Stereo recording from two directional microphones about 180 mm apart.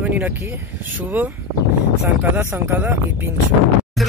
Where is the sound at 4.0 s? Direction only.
Centre (ahead or behind).